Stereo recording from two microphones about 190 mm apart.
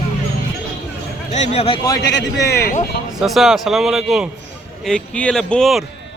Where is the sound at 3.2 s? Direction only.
Centre (ahead or behind).